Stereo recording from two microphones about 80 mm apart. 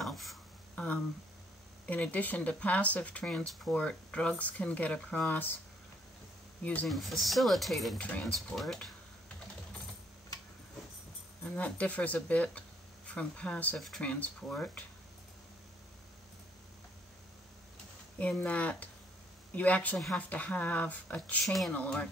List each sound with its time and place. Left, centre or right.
0.0 s a sound: centre
0.7 s a sound: centre
1.9 s speech: centre
6.6 s speech: centre
6.9 s speech: centre
8.0 s speech: centre
8.5 s speech: centre
11.4 s speech: centre
13.7 s speech: centre
14.0 s speech: centre
18.4 s speech: centre
21.5 s speech: centre
21.7 s speech: centre